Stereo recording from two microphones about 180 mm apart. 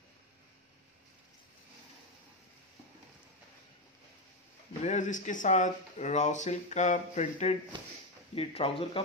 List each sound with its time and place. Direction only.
4.8 s speech: 45° left (ahead or behind)